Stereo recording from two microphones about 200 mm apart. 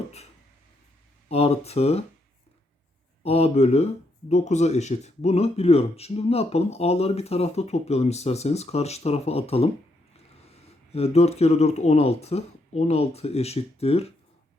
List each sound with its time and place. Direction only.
1.3 s speech: 30° left (ahead or behind)
3.2 s speech: 30° left (ahead or behind)